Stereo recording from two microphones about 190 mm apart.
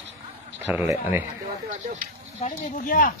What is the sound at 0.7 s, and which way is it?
Speech, 10° right (ahead or behind).